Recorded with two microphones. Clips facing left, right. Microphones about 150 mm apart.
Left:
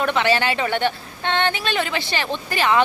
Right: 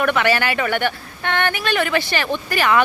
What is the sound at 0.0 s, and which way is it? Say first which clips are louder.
Speech: right 1 dB; 25° left (ahead or behind).